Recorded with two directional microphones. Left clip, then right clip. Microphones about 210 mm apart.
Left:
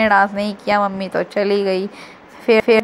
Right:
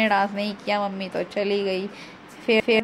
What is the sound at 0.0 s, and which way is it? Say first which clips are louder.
A woman's voice: left 7 dB; 15° left (ahead or behind).